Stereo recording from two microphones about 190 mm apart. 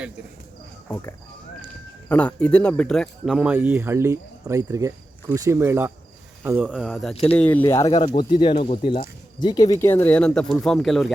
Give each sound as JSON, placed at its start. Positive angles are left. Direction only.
{"t": 0.9, "sound": "speech", "side_deg": 10}
{"t": 7.9, "sound": "speech", "side_deg": 30}